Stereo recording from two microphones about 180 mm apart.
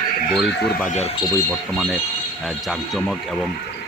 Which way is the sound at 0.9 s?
40° left (ahead or behind).